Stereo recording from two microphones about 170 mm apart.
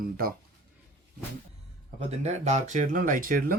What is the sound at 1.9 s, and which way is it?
Speech, 40° right (ahead or behind).